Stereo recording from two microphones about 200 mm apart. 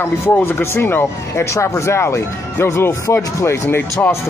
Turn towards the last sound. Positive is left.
turn(degrees=10)  # may be behind; listen again after turning